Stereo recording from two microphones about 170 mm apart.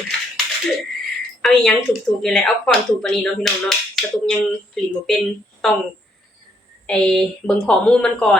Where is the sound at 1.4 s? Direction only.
Centre (ahead or behind).